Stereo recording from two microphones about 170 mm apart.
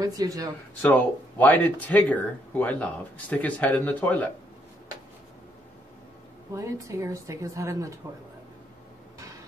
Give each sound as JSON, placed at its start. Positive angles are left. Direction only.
{"t": 0.0, "sound": "speech", "side_deg": -20}
{"t": 0.8, "sound": "speech", "side_deg": 10}
{"t": 6.5, "sound": "a woman's voice", "side_deg": -20}